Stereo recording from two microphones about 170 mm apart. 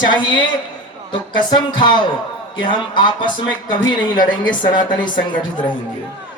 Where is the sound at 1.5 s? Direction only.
25° left (ahead or behind).